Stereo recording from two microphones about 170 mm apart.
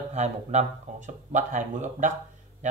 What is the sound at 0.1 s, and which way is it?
Speech, 40° right (ahead or behind).